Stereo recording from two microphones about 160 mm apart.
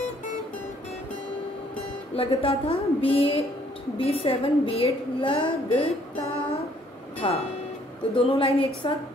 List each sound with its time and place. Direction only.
2.1 s a woman's voice: 35° left (ahead or behind)
7.2 s a woman's voice: 35° left (ahead or behind)